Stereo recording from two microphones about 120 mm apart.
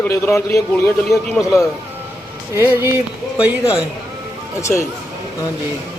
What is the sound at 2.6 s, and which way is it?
Speech, 20° right (ahead or behind).